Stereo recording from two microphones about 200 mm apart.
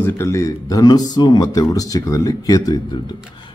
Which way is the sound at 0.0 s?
15° left (ahead or behind).